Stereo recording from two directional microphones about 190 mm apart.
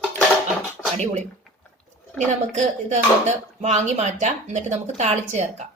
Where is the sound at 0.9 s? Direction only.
40° right (ahead or behind).